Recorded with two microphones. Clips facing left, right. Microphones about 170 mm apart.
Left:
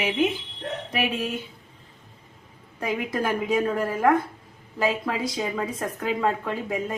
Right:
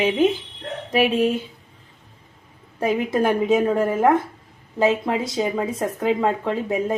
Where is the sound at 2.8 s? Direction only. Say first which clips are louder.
Right 6 dB; 25° right (ahead or behind).